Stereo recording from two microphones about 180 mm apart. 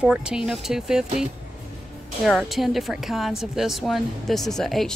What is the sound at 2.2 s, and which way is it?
A woman's voice, centre (ahead or behind).